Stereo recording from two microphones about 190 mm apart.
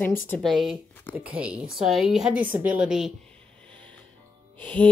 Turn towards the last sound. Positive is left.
turn(degrees=10)  # may be behind; listen again after turning